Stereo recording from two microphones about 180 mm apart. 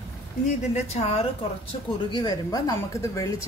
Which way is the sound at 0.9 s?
35° left (ahead or behind).